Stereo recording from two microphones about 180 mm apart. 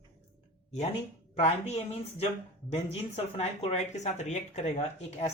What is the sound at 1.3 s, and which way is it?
Speech, 35° left (ahead or behind).